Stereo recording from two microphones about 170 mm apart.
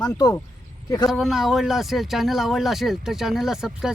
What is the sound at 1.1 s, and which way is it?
Speech, centre (ahead or behind).